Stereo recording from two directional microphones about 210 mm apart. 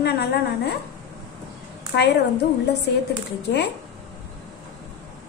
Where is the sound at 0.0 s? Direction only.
50° left (ahead or behind).